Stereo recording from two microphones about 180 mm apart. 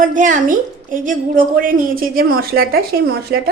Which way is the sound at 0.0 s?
45° right (ahead or behind).